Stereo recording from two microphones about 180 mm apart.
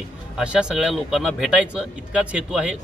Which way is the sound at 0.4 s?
5° right (ahead or behind).